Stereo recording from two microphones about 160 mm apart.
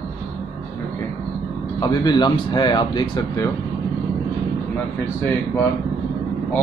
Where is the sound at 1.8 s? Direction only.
25° left (ahead or behind).